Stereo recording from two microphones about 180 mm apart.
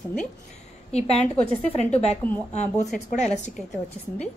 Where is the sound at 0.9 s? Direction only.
35° left (ahead or behind).